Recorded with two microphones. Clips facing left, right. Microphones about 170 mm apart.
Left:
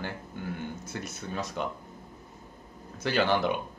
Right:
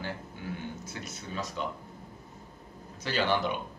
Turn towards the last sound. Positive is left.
turn(degrees=55)  # may be behind; listen again after turning